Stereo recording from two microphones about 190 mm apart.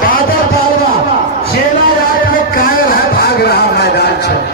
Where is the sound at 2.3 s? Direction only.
50° left (ahead or behind).